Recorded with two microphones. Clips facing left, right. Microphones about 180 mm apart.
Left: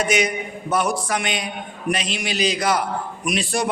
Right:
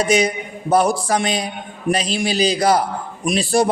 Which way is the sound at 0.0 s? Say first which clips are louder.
Right 4 dB; 35° right (ahead or behind).